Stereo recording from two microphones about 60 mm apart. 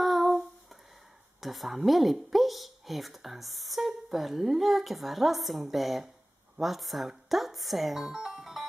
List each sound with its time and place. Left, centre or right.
0.0 s humming: centre
1.4 s a woman's voice: centre